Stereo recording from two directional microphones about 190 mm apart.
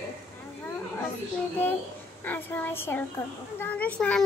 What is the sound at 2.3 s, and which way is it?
A child's voice, 10° left (ahead or behind).